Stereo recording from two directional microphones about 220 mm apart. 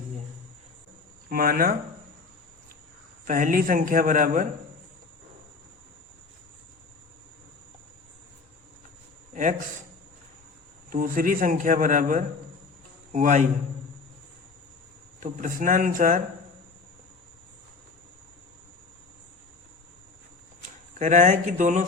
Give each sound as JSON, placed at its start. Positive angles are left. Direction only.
{"t": 1.3, "sound": "a man's voice", "side_deg": -40}
{"t": 3.2, "sound": "a man's voice", "side_deg": -35}
{"t": 9.3, "sound": "a sound", "side_deg": -35}
{"t": 10.8, "sound": "a man's voice", "side_deg": -40}
{"t": 15.2, "sound": "a man's voice", "side_deg": -35}
{"t": 21.0, "sound": "a man's voice", "side_deg": -35}